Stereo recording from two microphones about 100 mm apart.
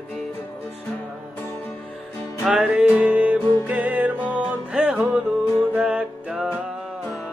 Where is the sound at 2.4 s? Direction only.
5° right (ahead or behind).